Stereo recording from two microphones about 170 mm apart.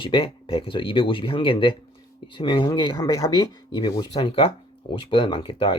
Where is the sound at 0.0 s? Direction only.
30° left (ahead or behind).